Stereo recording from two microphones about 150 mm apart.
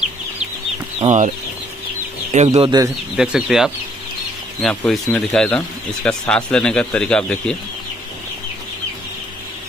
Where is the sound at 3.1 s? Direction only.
5° right (ahead or behind).